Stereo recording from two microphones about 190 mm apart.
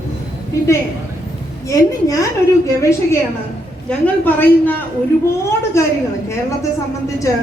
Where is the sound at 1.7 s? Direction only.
20° left (ahead or behind).